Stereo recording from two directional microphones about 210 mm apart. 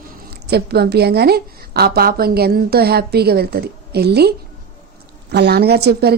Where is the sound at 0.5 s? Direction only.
50° right (ahead or behind).